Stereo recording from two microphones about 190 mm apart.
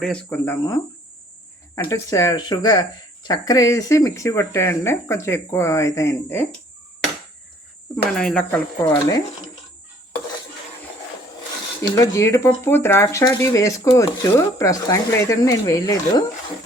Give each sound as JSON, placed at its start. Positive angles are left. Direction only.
{"t": 0.0, "sound": "speech", "side_deg": 10}
{"t": 8.1, "sound": "speech", "side_deg": 5}
{"t": 8.9, "sound": "speech", "side_deg": 15}
{"t": 11.8, "sound": "speech", "side_deg": 15}